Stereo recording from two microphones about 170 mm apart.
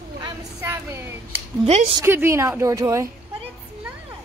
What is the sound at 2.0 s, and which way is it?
A woman's voice, 15° right (ahead or behind).